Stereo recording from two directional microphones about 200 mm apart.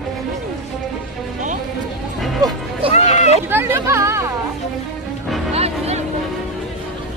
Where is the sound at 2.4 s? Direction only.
20° right (ahead or behind).